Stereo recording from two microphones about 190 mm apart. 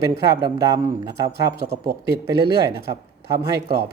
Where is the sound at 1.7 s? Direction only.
55° right (ahead or behind).